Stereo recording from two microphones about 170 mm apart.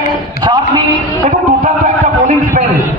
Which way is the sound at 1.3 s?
45° right (ahead or behind).